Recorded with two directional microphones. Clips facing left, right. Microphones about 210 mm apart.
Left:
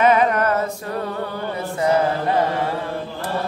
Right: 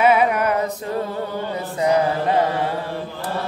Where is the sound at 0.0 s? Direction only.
10° right (ahead or behind).